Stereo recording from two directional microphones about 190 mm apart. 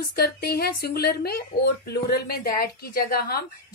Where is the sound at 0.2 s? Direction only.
60° left (ahead or behind).